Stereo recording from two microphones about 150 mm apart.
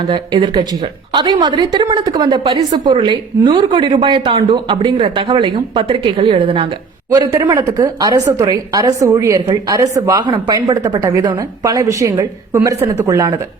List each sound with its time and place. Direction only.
0.1 s speech: 35° right (ahead or behind)
7.1 s a woman's voice: 25° right (ahead or behind)